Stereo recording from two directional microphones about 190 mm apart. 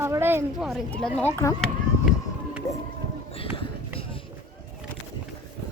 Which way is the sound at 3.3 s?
30° left (ahead or behind).